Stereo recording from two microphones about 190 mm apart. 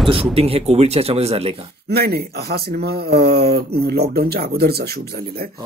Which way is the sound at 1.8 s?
55° right (ahead or behind).